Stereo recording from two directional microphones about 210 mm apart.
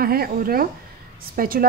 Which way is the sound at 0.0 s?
45° right (ahead or behind).